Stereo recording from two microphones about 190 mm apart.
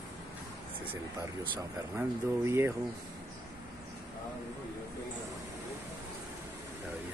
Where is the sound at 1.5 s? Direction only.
15° right (ahead or behind).